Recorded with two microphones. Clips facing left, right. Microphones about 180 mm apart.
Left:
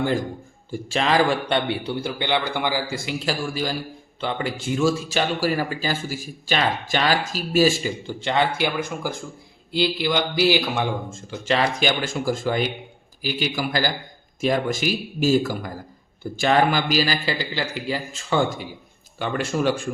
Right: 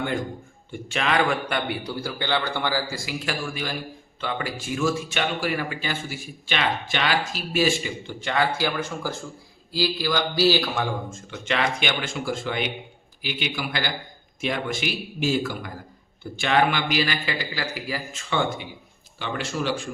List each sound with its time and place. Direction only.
0.7 s a man's voice: 35° left (ahead or behind); by 10.8 s 15° left (ahead or behind)
11.1 s a man's voice: 30° left (ahead or behind)
17.5 s a man's voice: 25° left (ahead or behind)
18.3 s a man's voice: 40° left (ahead or behind)
19.2 s a man's voice: 50° left (ahead or behind)